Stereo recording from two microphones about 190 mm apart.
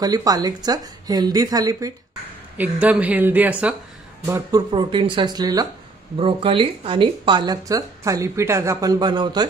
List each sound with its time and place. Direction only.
0.0 s speech: 20° right (ahead or behind)
2.5 s speech: 10° right (ahead or behind)
4.3 s speech: 20° right (ahead or behind)